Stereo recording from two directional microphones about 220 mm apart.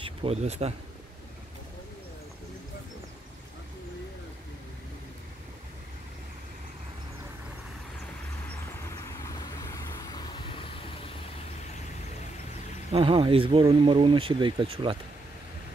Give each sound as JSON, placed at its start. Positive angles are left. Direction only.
{"t": 0.0, "sound": "speech", "side_deg": -25}
{"t": 8.8, "sound": "vehicle", "side_deg": 15}
{"t": 12.9, "sound": "speech", "side_deg": -25}